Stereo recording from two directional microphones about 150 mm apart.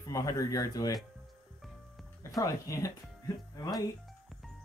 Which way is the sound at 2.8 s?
20° left (ahead or behind).